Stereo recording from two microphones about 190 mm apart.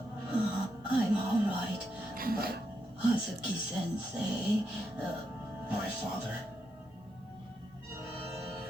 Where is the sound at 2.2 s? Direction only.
50° right (ahead or behind).